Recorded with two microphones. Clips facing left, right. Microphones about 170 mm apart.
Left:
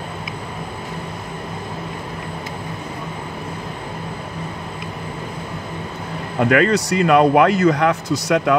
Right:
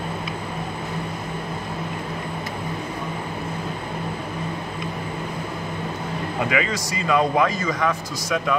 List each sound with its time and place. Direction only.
6.5 s speech: 65° left (ahead or behind)